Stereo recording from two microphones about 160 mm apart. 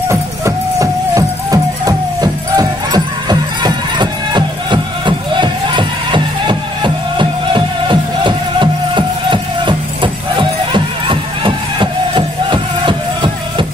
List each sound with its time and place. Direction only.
0.1 s music: 20° right (ahead or behind)